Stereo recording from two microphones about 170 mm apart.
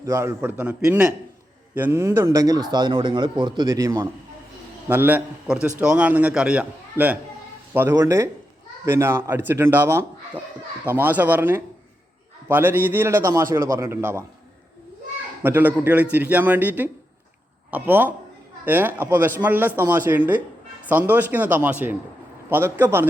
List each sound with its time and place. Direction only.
0.0 s a man's voice: 15° right (ahead or behind)
0.5 s a man's voice: 5° right (ahead or behind)
15.4 s a man's voice: 10° right (ahead or behind)